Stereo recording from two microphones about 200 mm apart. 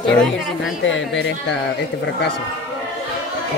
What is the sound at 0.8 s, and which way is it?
Speech, 70° left (ahead or behind).